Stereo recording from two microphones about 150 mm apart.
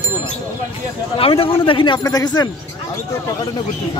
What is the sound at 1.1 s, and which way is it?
A man's voice, 40° left (ahead or behind).